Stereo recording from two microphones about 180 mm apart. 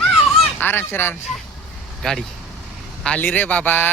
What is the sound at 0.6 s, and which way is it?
Speech, 10° left (ahead or behind).